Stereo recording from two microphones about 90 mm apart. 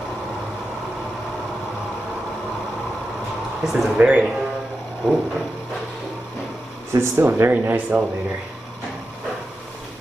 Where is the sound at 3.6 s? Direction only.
5° right (ahead or behind).